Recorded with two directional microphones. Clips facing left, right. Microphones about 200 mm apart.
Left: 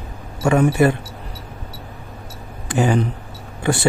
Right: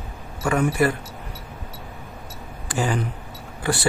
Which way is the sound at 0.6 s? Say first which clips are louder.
Left 4 dB; 25° left (ahead or behind).